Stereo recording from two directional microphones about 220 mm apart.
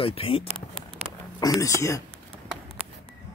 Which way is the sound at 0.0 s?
25° left (ahead or behind).